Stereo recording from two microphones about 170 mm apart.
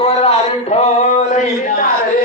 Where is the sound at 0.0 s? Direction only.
35° left (ahead or behind).